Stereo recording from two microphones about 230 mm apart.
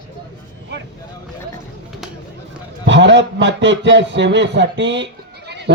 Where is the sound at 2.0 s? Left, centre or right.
Centre.